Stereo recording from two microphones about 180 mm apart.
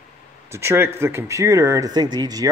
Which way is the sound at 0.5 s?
15° right (ahead or behind).